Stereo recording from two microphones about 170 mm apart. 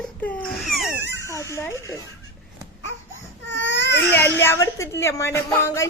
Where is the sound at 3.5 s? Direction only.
90° left.